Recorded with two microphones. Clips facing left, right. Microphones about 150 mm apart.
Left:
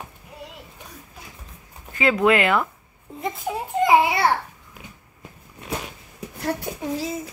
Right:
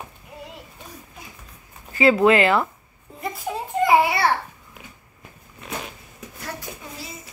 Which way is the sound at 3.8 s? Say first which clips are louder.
Even; 20° left (ahead or behind).